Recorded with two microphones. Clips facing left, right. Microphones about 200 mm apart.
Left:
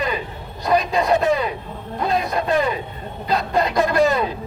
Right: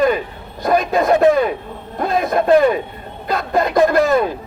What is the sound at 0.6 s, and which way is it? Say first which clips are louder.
A man's voice: right 3 dB; 50° right (ahead or behind).